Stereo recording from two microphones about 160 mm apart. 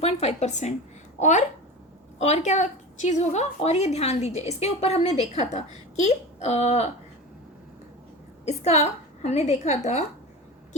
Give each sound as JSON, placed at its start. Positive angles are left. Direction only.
{"t": 0.0, "sound": "a woman's voice", "side_deg": 40}
{"t": 8.4, "sound": "a woman's voice", "side_deg": 45}